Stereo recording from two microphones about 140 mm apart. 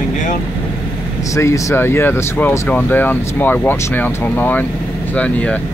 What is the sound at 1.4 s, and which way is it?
Speech, 20° left (ahead or behind).